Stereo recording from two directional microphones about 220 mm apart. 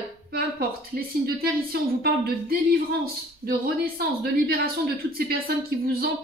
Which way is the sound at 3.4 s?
45° right (ahead or behind).